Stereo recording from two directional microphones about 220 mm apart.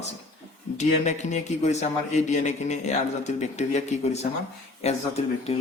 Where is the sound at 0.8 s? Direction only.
30° left (ahead or behind).